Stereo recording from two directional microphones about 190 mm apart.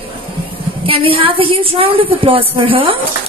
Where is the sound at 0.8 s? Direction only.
30° right (ahead or behind).